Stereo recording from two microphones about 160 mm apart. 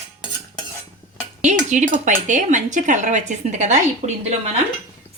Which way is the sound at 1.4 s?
50° right (ahead or behind).